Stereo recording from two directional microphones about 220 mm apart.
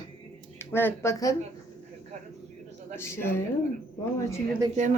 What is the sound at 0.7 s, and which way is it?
Speech, 10° left (ahead or behind).